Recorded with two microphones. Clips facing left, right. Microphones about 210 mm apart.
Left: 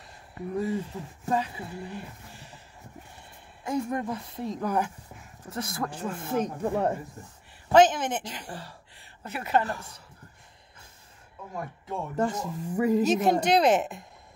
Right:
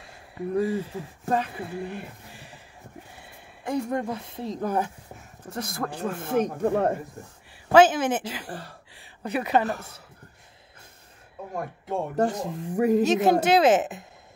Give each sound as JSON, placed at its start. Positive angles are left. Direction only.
{"t": 0.7, "sound": "speech", "side_deg": -10}
{"t": 1.2, "sound": "speech", "side_deg": -60}
{"t": 1.6, "sound": "speech", "side_deg": -15}
{"t": 2.0, "sound": "a sound", "side_deg": -10}
{"t": 3.6, "sound": "speech", "side_deg": -30}
{"t": 5.4, "sound": "speech", "side_deg": -45}
{"t": 5.8, "sound": "speech", "side_deg": -60}
{"t": 7.7, "sound": "speech", "side_deg": -5}
{"t": 11.5, "sound": "speech", "side_deg": -55}
{"t": 13.0, "sound": "a woman's voice", "side_deg": 0}